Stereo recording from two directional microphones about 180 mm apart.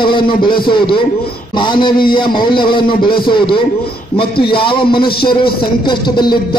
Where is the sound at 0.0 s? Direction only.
25° left (ahead or behind).